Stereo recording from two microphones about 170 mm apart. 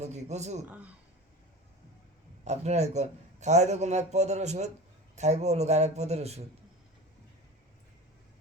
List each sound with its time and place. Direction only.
0.0 s a man's voice: 40° right (ahead or behind)
2.4 s a man's voice: 40° right (ahead or behind)